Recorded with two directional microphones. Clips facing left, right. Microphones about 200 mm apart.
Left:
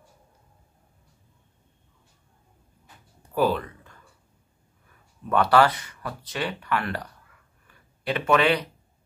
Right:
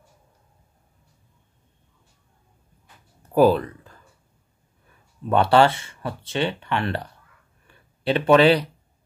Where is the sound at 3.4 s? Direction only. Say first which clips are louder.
Right 7 dB; 40° right (ahead or behind).